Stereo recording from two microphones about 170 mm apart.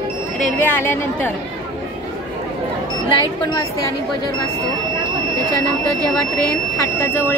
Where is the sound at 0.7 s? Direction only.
10° left (ahead or behind).